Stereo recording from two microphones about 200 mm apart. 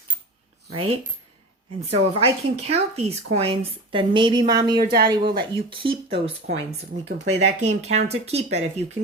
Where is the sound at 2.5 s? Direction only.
30° right (ahead or behind).